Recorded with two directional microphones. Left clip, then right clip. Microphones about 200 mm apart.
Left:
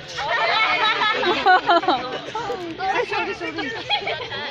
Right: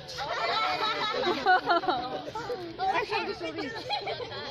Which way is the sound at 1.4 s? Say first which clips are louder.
Left 8 dB; 45° left (ahead or behind).